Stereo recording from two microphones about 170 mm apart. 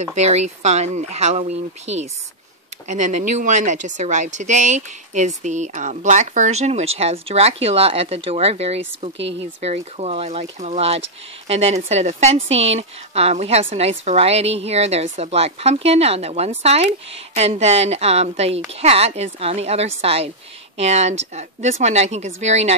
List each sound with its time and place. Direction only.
0.1 s a woman's voice: 40° right (ahead or behind)